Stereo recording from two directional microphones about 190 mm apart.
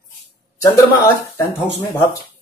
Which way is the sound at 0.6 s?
15° left (ahead or behind).